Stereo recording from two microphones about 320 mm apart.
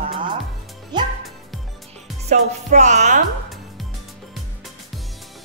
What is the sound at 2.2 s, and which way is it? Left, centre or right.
Music, right.